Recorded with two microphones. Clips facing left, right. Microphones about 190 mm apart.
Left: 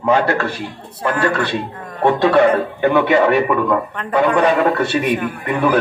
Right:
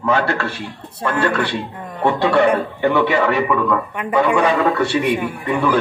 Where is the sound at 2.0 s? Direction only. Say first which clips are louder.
Left 2 dB; 15° left (ahead or behind).